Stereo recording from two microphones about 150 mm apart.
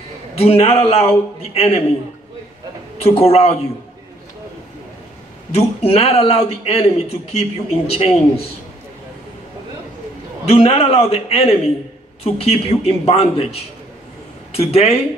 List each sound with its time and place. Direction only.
0.4 s a man's voice: 40° left (ahead or behind)
3.2 s a man's voice: 45° left (ahead or behind)
5.5 s a man's voice: 45° left (ahead or behind)
10.4 s a man's voice: 40° left (ahead or behind)